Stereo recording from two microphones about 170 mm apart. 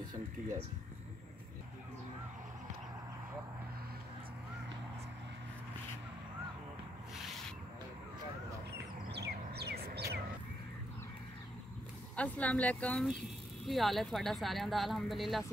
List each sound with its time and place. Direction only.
9.1 s bird: 70° right (ahead or behind)
12.2 s speech: 10° left (ahead or behind)